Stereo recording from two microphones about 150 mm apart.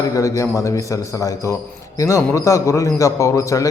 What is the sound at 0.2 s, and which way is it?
A man's voice, 20° left (ahead or behind).